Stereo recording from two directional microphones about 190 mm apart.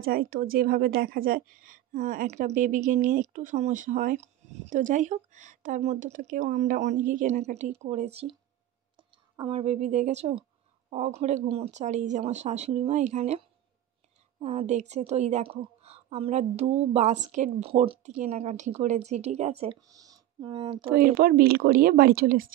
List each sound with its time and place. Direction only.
0.0 s a woman's voice: 50° right (ahead or behind)
14.4 s speech: 35° right (ahead or behind)
19.9 s speech: 20° right (ahead or behind)
20.9 s a woman's voice: 50° right (ahead or behind)